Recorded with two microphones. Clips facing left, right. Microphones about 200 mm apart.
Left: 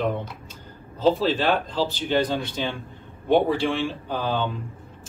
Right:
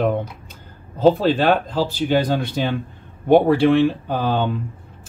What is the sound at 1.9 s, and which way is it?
Speech, 10° right (ahead or behind).